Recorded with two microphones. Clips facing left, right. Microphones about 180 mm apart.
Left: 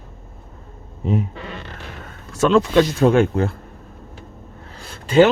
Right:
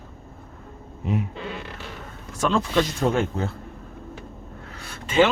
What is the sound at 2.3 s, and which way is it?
Speech, 75° left (ahead or behind).